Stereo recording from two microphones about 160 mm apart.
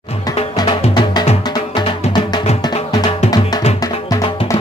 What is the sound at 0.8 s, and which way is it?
Music, 35° left (ahead or behind).